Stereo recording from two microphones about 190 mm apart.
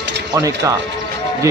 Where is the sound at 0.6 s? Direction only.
15° right (ahead or behind).